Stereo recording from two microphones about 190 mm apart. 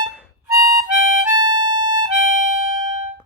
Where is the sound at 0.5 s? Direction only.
20° right (ahead or behind).